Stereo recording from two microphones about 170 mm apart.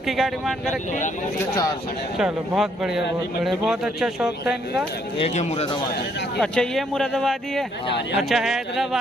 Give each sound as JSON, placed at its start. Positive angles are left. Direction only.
{"t": 0.0, "sound": "speech", "side_deg": 0}
{"t": 1.4, "sound": "speech", "side_deg": 20}
{"t": 2.1, "sound": "speech", "side_deg": 0}
{"t": 5.2, "sound": "speech", "side_deg": 40}
{"t": 6.4, "sound": "speech", "side_deg": 5}